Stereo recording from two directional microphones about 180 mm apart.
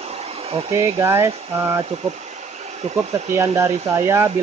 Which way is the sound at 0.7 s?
15° right (ahead or behind).